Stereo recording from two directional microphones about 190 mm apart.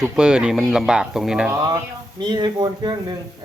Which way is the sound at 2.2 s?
20° right (ahead or behind).